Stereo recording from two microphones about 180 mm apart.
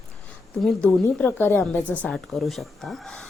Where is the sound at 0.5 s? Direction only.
Centre (ahead or behind).